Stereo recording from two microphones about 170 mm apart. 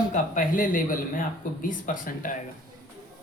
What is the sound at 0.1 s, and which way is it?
Speech, 55° left (ahead or behind).